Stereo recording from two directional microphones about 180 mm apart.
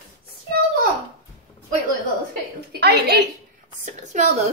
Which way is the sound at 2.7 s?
65° right (ahead or behind).